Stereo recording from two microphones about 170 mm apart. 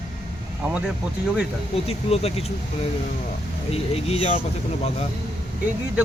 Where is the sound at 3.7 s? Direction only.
35° left (ahead or behind).